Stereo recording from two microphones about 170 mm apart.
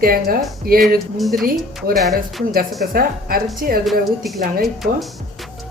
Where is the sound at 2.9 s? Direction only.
60° right (ahead or behind).